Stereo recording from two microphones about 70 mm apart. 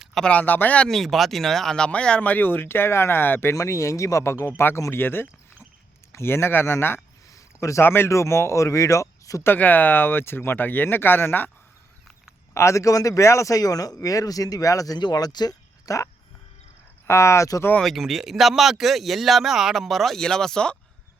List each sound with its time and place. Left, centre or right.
0.3 s speech: left
0.9 s speech: centre; by 3.5 s left
3.5 s speech: left
7.3 s a sound: left
7.8 s speech: left
9.4 s speech: left
12.5 s speech: left
14.9 s speech: left
15.9 s speech: left
17.1 s speech: left
17.8 s speech: centre